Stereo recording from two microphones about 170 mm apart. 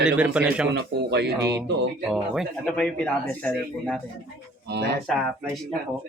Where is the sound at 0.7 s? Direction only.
80° right.